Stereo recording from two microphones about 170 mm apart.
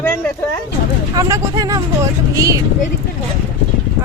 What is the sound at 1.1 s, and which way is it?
Speech, 20° right (ahead or behind).